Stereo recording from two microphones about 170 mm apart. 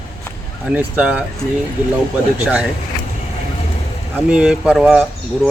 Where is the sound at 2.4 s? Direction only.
10° right (ahead or behind).